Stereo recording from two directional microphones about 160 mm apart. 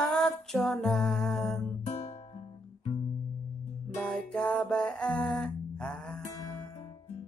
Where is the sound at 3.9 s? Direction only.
5° left (ahead or behind).